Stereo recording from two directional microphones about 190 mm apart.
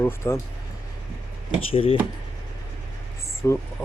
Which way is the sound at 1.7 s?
30° left (ahead or behind).